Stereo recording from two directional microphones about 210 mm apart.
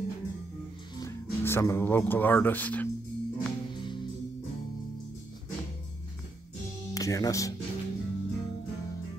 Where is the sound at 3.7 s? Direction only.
20° left (ahead or behind).